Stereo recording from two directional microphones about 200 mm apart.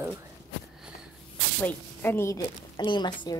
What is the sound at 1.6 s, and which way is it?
A woman's voice, 10° left (ahead or behind).